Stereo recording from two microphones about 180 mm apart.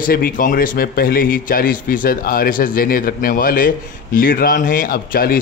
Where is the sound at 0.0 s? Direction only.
55° left (ahead or behind).